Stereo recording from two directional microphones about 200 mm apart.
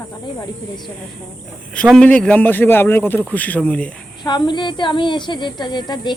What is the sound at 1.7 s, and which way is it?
A man's voice, 5° left (ahead or behind).